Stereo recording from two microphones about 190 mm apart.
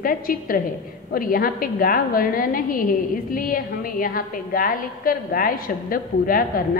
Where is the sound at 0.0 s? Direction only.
50° left (ahead or behind).